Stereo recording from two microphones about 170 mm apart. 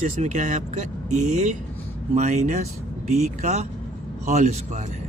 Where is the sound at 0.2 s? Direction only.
45° right (ahead or behind).